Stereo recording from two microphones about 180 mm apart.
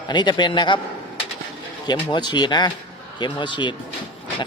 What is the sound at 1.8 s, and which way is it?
Speech, 25° left (ahead or behind).